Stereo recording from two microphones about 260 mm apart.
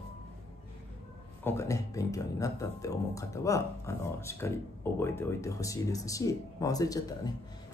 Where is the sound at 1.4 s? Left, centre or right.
Centre.